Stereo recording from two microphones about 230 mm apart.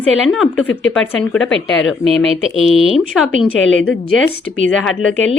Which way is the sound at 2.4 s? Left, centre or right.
Left.